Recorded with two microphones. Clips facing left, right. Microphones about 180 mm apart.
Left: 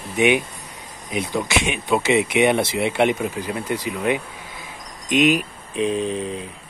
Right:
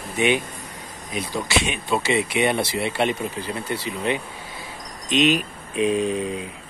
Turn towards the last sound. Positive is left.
turn(degrees=-10)  # may be behind; listen again after turning